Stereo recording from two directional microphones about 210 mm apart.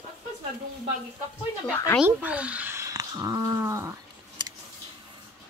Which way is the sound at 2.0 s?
5° right (ahead or behind).